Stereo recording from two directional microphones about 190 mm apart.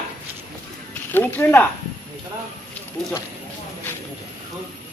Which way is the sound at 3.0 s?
Centre (ahead or behind).